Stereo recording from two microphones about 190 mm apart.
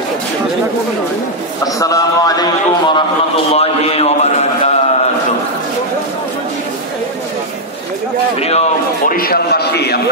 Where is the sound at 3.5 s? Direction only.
30° left (ahead or behind).